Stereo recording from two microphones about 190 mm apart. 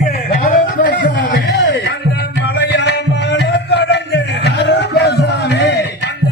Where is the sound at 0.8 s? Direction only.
50° left (ahead or behind).